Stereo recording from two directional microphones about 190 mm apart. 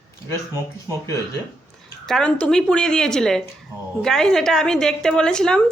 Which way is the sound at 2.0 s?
5° left (ahead or behind).